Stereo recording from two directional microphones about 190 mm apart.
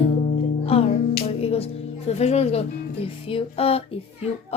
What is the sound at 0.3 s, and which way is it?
Music, 30° left (ahead or behind).